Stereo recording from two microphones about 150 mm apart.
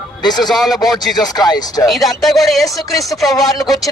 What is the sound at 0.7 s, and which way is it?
Speech, 25° left (ahead or behind).